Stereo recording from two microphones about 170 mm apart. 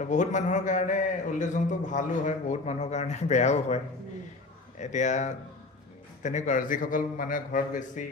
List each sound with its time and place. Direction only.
0.0 s a man's voice: 45° left (ahead or behind)